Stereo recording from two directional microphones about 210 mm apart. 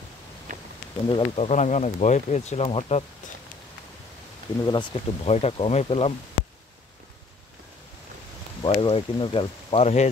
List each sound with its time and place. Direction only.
1.0 s speech: 25° left (ahead or behind)
4.6 s speech: 20° left (ahead or behind)
8.6 s speech: 25° left (ahead or behind)